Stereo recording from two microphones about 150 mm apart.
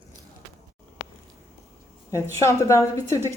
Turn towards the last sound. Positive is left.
turn(degrees=20)  # may be behind; listen again after turning